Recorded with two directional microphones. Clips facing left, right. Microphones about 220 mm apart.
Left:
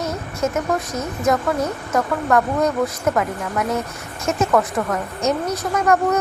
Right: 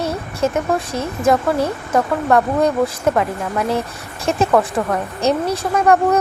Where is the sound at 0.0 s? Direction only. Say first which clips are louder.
Right 3 dB; 30° right (ahead or behind).